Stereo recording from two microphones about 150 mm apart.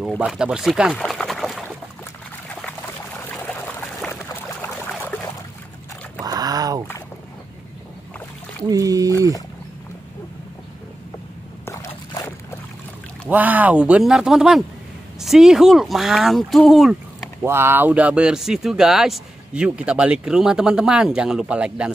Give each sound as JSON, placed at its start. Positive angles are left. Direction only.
{"t": 0.2, "sound": "speech", "side_deg": -5}
{"t": 4.1, "sound": "pour", "side_deg": 15}
{"t": 6.2, "sound": "a sound", "side_deg": -25}
{"t": 8.6, "sound": "speech", "side_deg": -20}
{"t": 13.3, "sound": "speech", "side_deg": -10}
{"t": 17.5, "sound": "speech", "side_deg": -15}